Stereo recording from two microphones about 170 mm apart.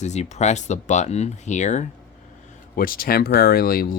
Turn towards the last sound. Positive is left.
turn(degrees=60)  # may be behind; listen again after turning